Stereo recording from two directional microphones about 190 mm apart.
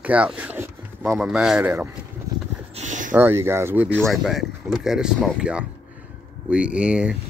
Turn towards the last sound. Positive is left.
turn(degrees=-5)  # may be behind; listen again after turning